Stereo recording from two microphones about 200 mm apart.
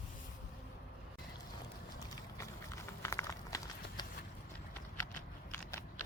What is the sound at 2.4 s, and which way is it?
Horse, 15° left (ahead or behind).